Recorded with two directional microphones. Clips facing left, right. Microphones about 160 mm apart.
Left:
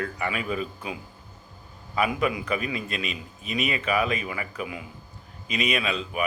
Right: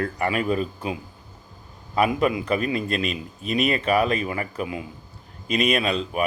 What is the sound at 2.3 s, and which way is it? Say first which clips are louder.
Speech: right 5 dB; 35° right (ahead or behind).